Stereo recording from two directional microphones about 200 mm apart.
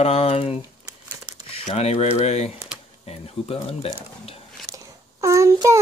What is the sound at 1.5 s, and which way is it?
Speech, 30° left (ahead or behind).